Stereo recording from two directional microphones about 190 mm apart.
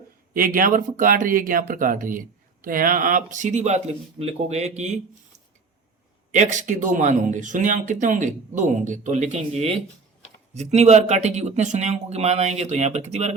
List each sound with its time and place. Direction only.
0.3 s speech: 45° right (ahead or behind)
6.3 s speech: 40° right (ahead or behind)